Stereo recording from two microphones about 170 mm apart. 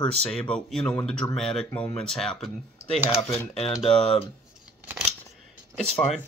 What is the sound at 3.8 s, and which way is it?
Speech, 30° left (ahead or behind).